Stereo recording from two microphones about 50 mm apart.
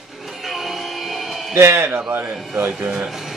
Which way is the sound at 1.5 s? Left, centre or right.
Right.